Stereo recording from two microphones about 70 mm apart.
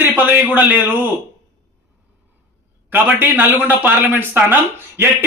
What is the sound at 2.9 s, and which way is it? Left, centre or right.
A man's voice, right.